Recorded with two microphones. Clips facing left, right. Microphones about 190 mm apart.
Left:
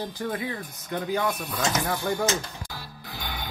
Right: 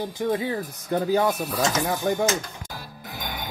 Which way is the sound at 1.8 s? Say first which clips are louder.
Right 3 dB; 15° right (ahead or behind).